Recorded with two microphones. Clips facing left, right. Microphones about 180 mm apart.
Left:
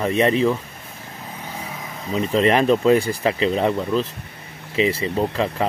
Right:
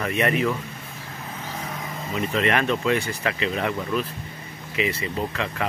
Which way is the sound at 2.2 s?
30° left (ahead or behind).